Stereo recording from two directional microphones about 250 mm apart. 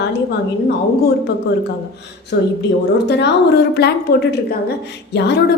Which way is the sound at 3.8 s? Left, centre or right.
Left.